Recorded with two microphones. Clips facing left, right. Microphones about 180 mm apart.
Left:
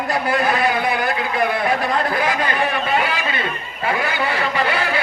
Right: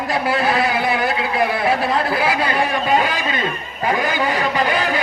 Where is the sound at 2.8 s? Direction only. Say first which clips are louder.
Right 3 dB; 40° right (ahead or behind).